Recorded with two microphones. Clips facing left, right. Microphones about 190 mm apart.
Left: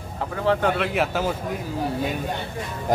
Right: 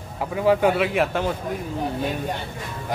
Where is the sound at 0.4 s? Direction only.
10° right (ahead or behind).